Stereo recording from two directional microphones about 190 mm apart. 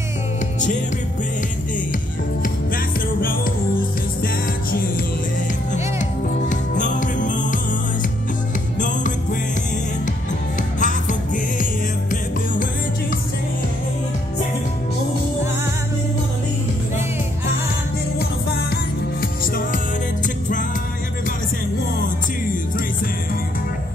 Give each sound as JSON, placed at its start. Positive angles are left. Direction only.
{"t": 6.5, "sound": "music", "side_deg": 40}
{"t": 8.7, "sound": "music", "side_deg": 45}
{"t": 10.8, "sound": "music", "side_deg": 40}